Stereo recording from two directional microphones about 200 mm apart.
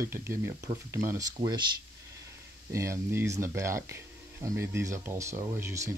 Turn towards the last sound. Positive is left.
turn(degrees=-15)  # may be behind; listen again after turning